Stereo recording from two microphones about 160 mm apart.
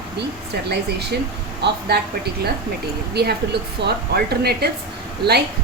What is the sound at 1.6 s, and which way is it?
A woman's voice, 85° right.